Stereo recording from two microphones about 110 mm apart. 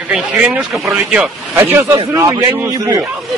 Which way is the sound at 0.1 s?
10° right (ahead or behind).